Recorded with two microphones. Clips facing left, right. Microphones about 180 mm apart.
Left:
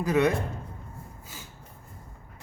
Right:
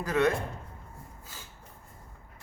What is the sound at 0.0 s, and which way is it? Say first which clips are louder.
Speech: left 3 dB; 15° left (ahead or behind).